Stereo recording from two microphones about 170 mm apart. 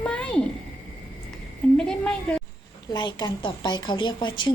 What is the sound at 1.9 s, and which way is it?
Speech, 5° left (ahead or behind).